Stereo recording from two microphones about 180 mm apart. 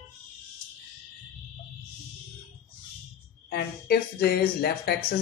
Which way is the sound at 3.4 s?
60° left (ahead or behind).